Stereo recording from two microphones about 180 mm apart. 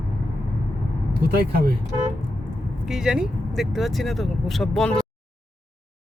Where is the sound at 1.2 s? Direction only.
60° right (ahead or behind).